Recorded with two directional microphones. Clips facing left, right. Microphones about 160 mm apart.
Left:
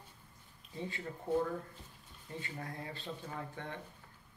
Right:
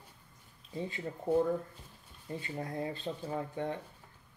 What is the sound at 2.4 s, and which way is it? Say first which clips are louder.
Speech: right 6 dB; 30° right (ahead or behind).